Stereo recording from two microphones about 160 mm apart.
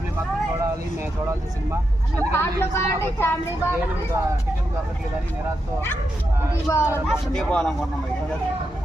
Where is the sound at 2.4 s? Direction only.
15° left (ahead or behind).